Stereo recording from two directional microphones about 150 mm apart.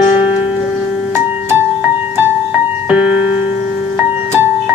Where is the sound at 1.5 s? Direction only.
15° right (ahead or behind).